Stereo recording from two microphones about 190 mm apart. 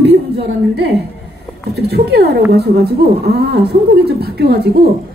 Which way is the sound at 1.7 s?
60° right (ahead or behind).